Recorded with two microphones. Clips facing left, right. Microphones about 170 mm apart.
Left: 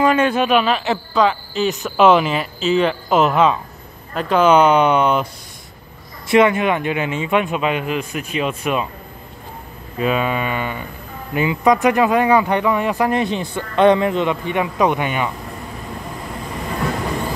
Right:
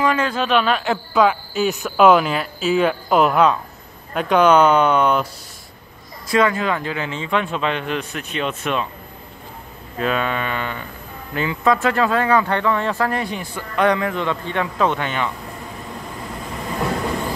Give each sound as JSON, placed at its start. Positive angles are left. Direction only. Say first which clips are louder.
{"t": 0.0, "sound": "a man's voice", "louder": "left 4 dB", "side_deg": 25}
{"t": 0.5, "sound": "speech", "louder": "left 2 dB", "side_deg": 5}
{"t": 6.3, "sound": "speech", "louder": "left 4 dB", "side_deg": 20}
{"t": 9.9, "sound": "speech", "louder": "left 2 dB", "side_deg": 5}